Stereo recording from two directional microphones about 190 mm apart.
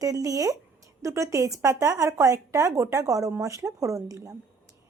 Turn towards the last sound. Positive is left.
turn(degrees=-15)  # may be behind; listen again after turning